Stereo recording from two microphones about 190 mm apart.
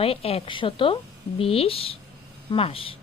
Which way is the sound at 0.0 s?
30° left (ahead or behind).